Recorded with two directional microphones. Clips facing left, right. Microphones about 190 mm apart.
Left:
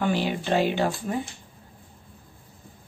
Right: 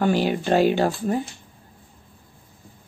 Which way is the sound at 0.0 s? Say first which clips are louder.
Right 4 dB; 45° right (ahead or behind).